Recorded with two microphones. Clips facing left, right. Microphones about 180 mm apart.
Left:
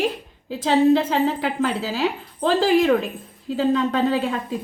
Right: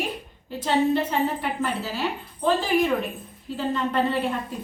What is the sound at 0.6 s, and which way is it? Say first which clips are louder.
A woman's voice: left 5 dB; 90° left.